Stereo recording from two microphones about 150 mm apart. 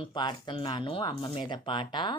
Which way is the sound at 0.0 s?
30° left (ahead or behind).